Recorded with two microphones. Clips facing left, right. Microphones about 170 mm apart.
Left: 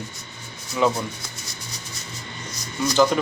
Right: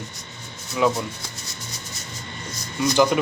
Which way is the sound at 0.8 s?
5° right (ahead or behind).